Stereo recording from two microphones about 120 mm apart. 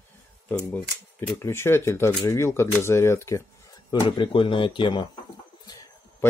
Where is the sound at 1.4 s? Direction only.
20° left (ahead or behind).